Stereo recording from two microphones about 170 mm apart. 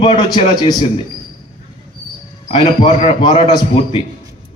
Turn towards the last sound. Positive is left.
turn(degrees=30)  # may be behind; listen again after turning